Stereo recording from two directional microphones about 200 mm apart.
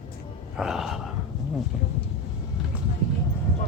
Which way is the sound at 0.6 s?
Centre (ahead or behind).